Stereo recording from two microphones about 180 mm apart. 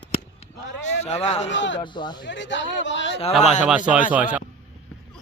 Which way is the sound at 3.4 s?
40° left (ahead or behind).